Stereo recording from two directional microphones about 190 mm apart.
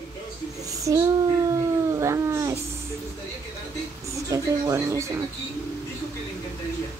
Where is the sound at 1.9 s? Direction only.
15° right (ahead or behind).